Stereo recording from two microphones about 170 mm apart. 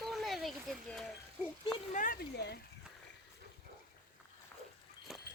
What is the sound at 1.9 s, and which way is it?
Speech, 55° left (ahead or behind).